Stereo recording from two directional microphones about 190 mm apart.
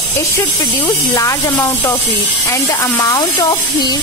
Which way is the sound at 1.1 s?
15° left (ahead or behind).